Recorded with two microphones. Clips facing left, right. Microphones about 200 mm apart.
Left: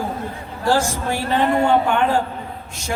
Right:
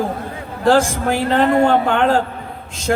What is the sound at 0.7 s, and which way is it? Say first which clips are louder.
Speech: right 5 dB; 90° right.